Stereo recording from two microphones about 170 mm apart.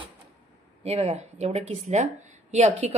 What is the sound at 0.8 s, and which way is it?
Speech, 35° right (ahead or behind).